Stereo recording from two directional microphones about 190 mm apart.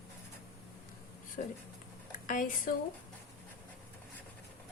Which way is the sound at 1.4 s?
45° left (ahead or behind).